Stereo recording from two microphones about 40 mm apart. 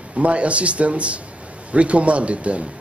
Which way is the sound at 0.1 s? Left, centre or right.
Right.